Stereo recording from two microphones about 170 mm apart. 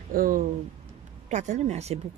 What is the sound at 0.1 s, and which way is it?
Speech, 55° right (ahead or behind).